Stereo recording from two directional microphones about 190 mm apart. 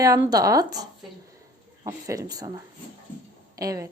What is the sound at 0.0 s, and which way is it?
Speech, 20° right (ahead or behind).